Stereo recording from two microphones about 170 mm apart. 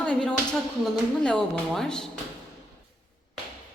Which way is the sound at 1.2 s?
5° left (ahead or behind).